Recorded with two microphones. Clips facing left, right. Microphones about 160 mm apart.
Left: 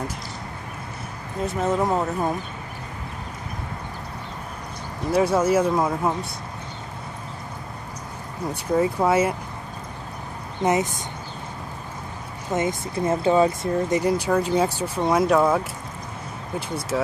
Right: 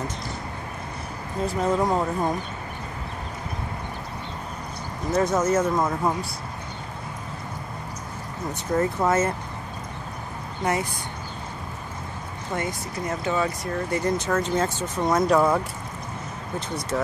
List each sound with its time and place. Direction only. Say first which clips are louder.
1.6 s speech: left 1 dB; 5° left (ahead or behind)
5.1 s speech: left 2 dB; 10° left (ahead or behind)
8.7 s speech: left 2 dB; 10° left (ahead or behind)
10.6 s speech: left 4 dB; 20° left (ahead or behind)
12.5 s speech: left 6 dB; 25° left (ahead or behind); by 15.6 s 5° left (ahead or behind)
16.9 s speech: left 2 dB; 5° left (ahead or behind)